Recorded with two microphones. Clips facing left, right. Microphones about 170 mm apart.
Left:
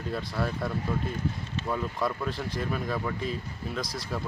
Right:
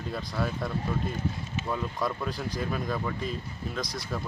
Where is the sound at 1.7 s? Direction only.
Centre (ahead or behind).